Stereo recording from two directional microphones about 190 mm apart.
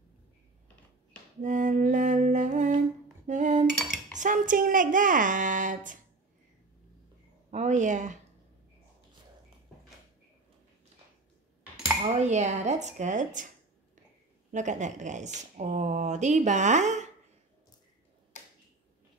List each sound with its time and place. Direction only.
1.4 s music: 40° right (ahead or behind)
3.3 s cutlery: 40° right (ahead or behind)
4.1 s a woman's voice: 40° right (ahead or behind)
7.5 s speech: 40° right (ahead or behind)
12.0 s speech: 35° right (ahead or behind)
14.5 s speech: 40° right (ahead or behind)